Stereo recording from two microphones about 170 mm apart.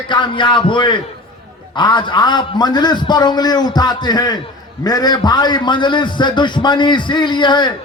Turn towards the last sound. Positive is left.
turn(degrees=25)  # may be behind; listen again after turning